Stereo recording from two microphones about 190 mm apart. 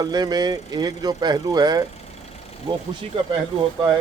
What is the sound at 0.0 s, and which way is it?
A man's voice, 20° right (ahead or behind).